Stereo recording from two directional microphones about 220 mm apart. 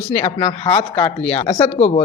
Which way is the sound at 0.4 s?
20° left (ahead or behind).